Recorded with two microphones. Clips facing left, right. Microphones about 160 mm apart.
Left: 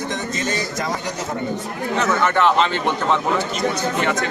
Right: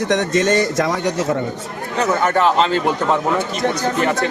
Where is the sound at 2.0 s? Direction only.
40° right (ahead or behind).